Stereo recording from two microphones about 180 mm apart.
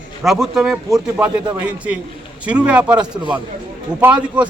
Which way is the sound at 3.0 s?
25° right (ahead or behind).